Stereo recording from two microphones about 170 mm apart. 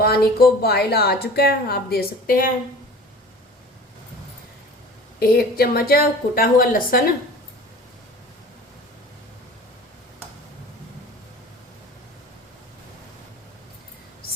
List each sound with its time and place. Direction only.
0.0 s a woman's voice: 65° left (ahead or behind)
5.2 s a woman's voice: 60° left (ahead or behind)